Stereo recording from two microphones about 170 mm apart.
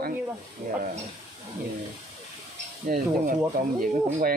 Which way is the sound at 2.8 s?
55° right (ahead or behind).